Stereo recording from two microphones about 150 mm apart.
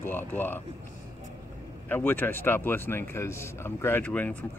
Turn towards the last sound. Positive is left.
turn(degrees=10)  # may be behind; listen again after turning